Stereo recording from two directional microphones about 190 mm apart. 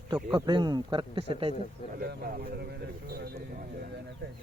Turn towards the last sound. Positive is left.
turn(degrees=-55)  # may be behind; listen again after turning